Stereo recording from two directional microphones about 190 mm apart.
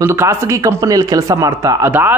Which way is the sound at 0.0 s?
15° right (ahead or behind).